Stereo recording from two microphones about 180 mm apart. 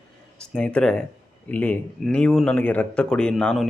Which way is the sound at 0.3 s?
5° left (ahead or behind).